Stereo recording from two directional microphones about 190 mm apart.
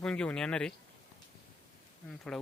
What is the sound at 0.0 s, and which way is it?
Speech, 5° left (ahead or behind).